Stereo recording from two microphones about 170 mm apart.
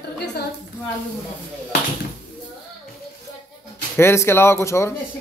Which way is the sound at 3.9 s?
15° left (ahead or behind).